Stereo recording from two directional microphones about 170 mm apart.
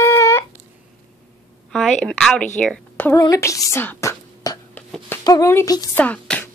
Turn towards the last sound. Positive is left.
turn(degrees=10)  # may be behind; listen again after turning